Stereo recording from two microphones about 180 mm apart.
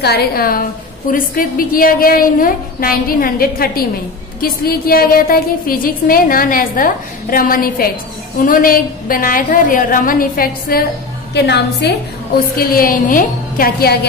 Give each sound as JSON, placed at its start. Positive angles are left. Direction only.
{"t": 0.0, "sound": "a woman's voice", "side_deg": 60}
{"t": 11.3, "sound": "a woman's voice", "side_deg": 70}
{"t": 12.5, "sound": "a woman's voice", "side_deg": 55}